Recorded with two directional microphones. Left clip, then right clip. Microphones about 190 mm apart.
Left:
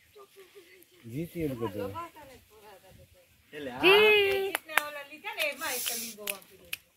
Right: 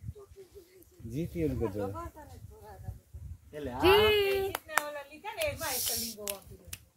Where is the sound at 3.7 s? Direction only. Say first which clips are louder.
Left 3 dB; 25° left (ahead or behind).